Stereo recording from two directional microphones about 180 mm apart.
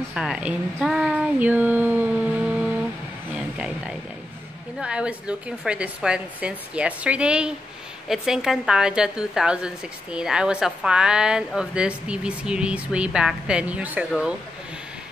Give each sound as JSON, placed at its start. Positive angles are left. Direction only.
{"t": 0.1, "sound": "speech", "side_deg": -5}
{"t": 3.3, "sound": "a sound", "side_deg": -5}
{"t": 4.7, "sound": "a woman's voice", "side_deg": -5}